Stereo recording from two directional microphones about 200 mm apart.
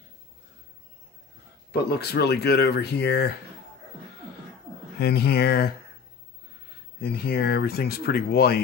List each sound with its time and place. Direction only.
1.7 s speech: 55° left (ahead or behind)
4.9 s speech: 50° left (ahead or behind)
7.0 s speech: 50° left (ahead or behind)